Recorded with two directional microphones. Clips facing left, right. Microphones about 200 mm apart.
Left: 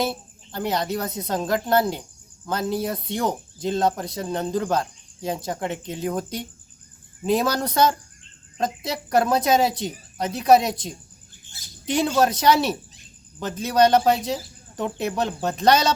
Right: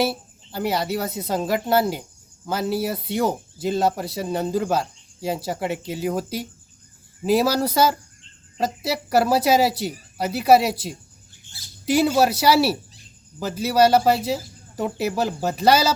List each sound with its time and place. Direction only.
0.0 s speech: 5° right (ahead or behind)